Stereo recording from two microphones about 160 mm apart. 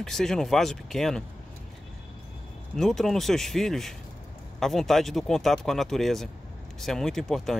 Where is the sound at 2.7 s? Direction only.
Centre (ahead or behind).